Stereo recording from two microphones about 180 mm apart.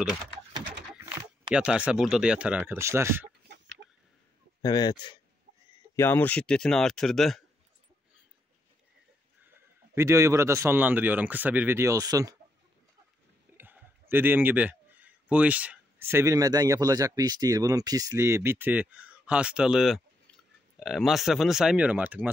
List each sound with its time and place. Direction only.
1.5 s speech: 5° right (ahead or behind)
3.4 s chicken: 75° right (ahead or behind)
4.6 s speech: 20° left (ahead or behind)
5.9 s speech: 10° left (ahead or behind)
9.9 s speech: 15° right (ahead or behind)
13.6 s speech: 10° right (ahead or behind)